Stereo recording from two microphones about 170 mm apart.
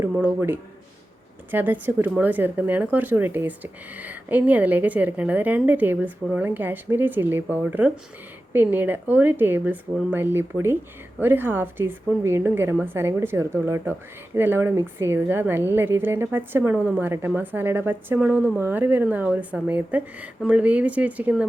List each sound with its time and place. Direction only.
0.0 s a woman's voice: 10° right (ahead or behind)